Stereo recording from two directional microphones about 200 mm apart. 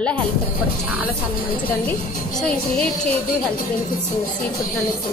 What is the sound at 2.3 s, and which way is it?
Speech, 5° left (ahead or behind).